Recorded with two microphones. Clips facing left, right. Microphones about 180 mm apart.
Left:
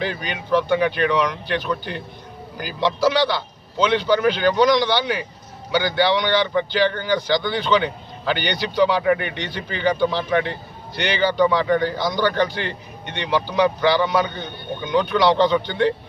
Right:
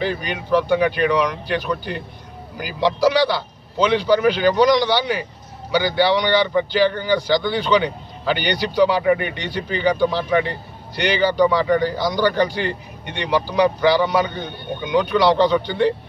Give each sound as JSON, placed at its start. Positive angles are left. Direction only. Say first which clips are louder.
{"t": 0.0, "sound": "speech", "louder": "right 3 dB", "side_deg": -5}